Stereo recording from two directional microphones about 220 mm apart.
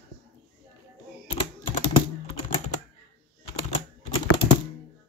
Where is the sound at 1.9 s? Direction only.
25° left (ahead or behind).